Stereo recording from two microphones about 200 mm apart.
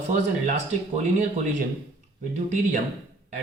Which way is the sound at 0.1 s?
35° right (ahead or behind).